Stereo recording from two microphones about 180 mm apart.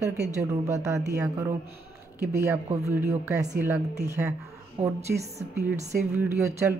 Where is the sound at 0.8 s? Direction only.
15° right (ahead or behind).